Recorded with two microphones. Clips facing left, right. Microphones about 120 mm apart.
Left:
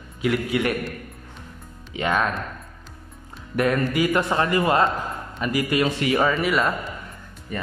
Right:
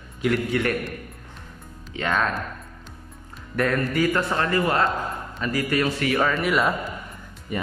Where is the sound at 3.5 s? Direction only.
10° left (ahead or behind).